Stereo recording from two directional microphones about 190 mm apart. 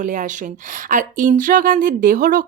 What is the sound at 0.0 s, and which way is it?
Speech, 40° right (ahead or behind).